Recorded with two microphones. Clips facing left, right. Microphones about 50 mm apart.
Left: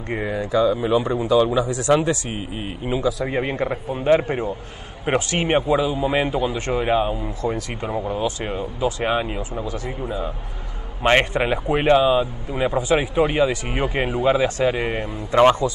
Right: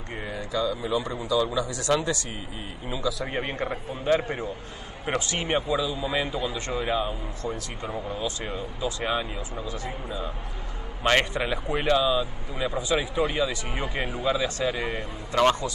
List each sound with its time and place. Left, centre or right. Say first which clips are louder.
0.1 s a man's voice: left 9 dB; left
1.0 s a man's voice: left 8 dB; left
1.7 s speech: left 7 dB; centre
2.0 s a man's voice: left 7 dB; left